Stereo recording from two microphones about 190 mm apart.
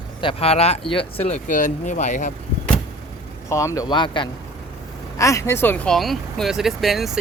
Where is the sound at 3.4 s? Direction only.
15° left (ahead or behind).